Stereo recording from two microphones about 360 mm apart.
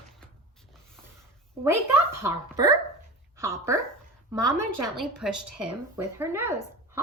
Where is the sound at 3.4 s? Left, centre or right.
Centre.